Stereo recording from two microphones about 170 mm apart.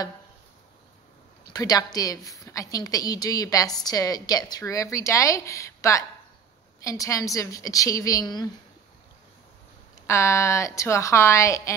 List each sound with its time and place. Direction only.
1.5 s a woman's voice: 20° left (ahead or behind)
10.0 s speech: 15° left (ahead or behind)